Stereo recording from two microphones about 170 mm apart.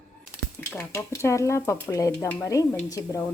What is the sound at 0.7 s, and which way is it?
Speech, 15° left (ahead or behind).